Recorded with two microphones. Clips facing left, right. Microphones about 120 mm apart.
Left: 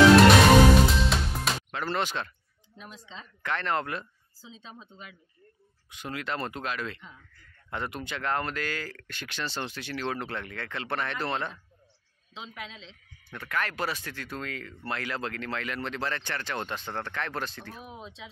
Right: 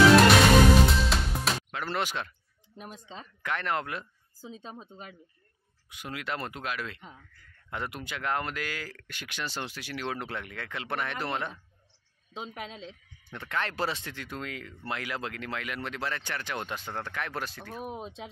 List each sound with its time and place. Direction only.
1.1 s music: centre (ahead or behind)
2.8 s speech: 50° right (ahead or behind)
3.4 s speech: 10° right (ahead or behind)
4.4 s speech: 50° right (ahead or behind)
5.9 s speech: 10° right (ahead or behind)
12.4 s speech: 45° right (ahead or behind)
13.2 s speech: 25° right (ahead or behind); by 17.8 s 5° right (ahead or behind)
17.8 s speech: 50° right (ahead or behind)